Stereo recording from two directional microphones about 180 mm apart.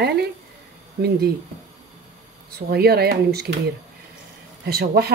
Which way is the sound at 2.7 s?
60° right (ahead or behind).